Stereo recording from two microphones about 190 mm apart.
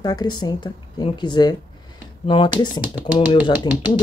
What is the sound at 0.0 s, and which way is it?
Speech, 20° left (ahead or behind).